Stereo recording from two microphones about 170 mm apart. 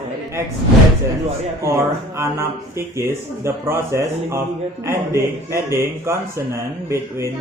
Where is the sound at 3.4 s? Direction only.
15° right (ahead or behind).